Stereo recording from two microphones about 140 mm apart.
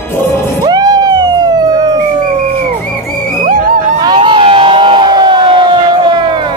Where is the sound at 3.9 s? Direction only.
35° right (ahead or behind).